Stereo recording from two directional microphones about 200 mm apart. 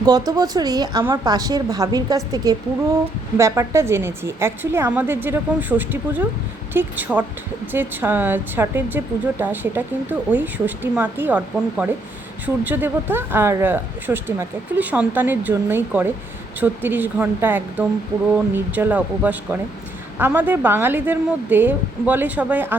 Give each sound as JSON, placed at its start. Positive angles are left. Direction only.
{"t": 0.0, "sound": "a woman's voice", "side_deg": -20}